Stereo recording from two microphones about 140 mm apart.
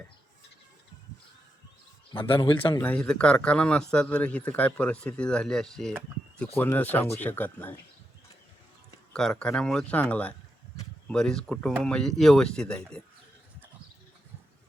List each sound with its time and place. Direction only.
2.1 s a man's voice: 35° left (ahead or behind)
2.8 s speech: 10° left (ahead or behind)
9.1 s speech: 5° left (ahead or behind)